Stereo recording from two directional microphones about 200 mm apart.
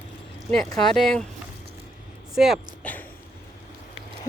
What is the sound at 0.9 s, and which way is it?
Speech, centre (ahead or behind).